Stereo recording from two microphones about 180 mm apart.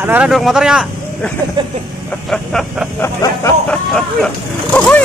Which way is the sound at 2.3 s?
Centre (ahead or behind).